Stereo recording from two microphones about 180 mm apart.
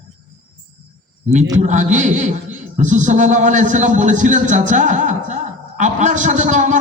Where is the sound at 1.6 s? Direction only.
40° right (ahead or behind).